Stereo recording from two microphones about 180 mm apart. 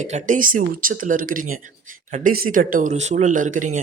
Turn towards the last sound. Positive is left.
turn(degrees=-45)  # may be behind; listen again after turning